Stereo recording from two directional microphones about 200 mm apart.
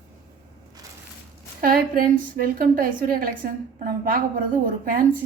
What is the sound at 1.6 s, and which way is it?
A woman's voice, 45° right (ahead or behind).